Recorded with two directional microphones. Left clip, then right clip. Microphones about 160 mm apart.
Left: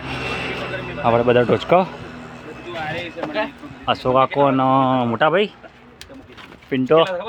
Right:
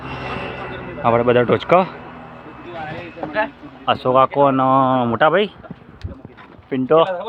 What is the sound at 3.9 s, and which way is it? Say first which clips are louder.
Speech: right 2 dB; 10° left (ahead or behind).